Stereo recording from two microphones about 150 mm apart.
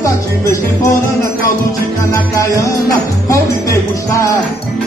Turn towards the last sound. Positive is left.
turn(degrees=20)  # may be behind; listen again after turning